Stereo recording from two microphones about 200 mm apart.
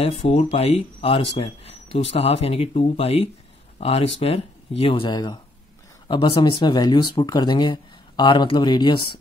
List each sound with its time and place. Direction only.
0.0 s speech: 30° left (ahead or behind)